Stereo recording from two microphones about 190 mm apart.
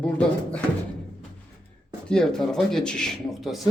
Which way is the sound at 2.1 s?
5° left (ahead or behind).